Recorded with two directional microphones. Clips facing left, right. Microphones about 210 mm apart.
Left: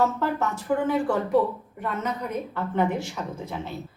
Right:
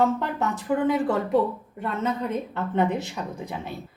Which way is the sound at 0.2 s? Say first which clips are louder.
Left 1 dB; 20° right (ahead or behind).